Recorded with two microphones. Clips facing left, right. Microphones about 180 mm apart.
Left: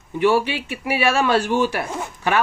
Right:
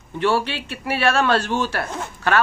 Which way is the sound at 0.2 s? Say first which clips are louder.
Left 3 dB; 15° left (ahead or behind).